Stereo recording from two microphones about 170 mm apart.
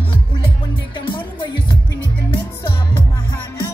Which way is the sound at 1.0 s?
30° left (ahead or behind).